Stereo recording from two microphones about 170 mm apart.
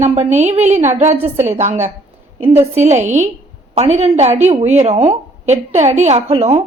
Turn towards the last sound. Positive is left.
turn(degrees=-35)  # may be behind; listen again after turning